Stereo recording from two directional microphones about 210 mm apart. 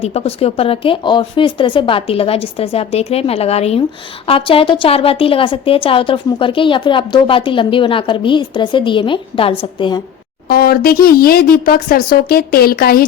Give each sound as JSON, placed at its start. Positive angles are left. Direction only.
{"t": 0.0, "sound": "a woman's voice", "side_deg": 30}
{"t": 10.5, "sound": "a woman's voice", "side_deg": 45}